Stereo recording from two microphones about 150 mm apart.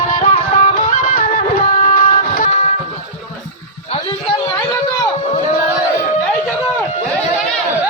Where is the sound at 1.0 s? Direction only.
60° left (ahead or behind).